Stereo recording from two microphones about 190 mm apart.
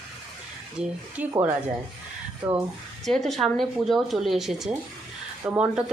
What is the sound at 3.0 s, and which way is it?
Speech, centre (ahead or behind).